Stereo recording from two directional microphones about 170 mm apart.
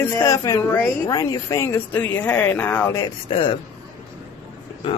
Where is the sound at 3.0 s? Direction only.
30° left (ahead or behind).